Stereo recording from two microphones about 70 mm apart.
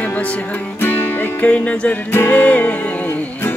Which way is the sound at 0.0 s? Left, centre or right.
Left.